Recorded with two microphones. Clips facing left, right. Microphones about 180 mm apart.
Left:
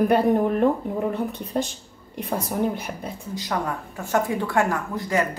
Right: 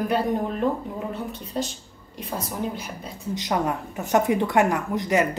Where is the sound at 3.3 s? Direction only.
20° right (ahead or behind).